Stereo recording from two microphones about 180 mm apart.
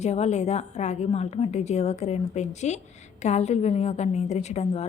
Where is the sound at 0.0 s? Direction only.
40° left (ahead or behind).